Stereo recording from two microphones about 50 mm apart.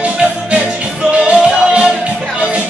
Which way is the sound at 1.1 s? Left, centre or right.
Right.